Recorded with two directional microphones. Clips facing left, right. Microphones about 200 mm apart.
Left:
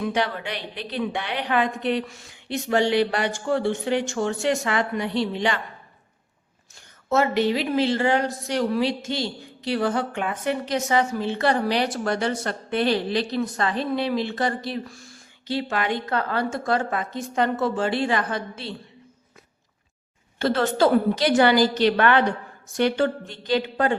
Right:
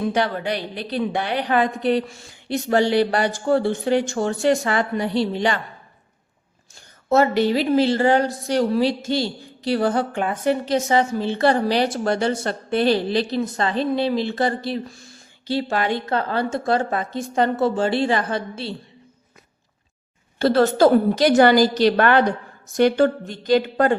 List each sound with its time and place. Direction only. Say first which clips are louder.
0.0 s a woman's voice: right 3 dB; 40° right (ahead or behind)
7.1 s a woman's voice: right 4 dB; 35° right (ahead or behind)
20.4 s a woman's voice: right 5 dB; 35° right (ahead or behind)